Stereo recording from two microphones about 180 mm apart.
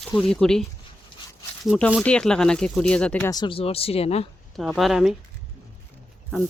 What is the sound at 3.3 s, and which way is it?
Speech, 25° left (ahead or behind).